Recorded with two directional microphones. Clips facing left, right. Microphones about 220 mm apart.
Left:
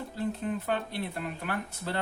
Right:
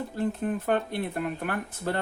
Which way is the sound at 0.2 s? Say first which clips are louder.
Right 3 dB; 50° right (ahead or behind).